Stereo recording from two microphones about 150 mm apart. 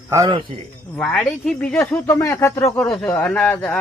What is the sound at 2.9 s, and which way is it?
Speech, 5° left (ahead or behind).